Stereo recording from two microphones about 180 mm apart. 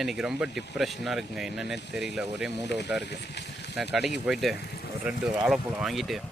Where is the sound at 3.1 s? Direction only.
70° left (ahead or behind).